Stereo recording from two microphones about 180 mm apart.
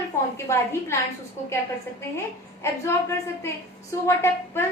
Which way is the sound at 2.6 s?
15° left (ahead or behind).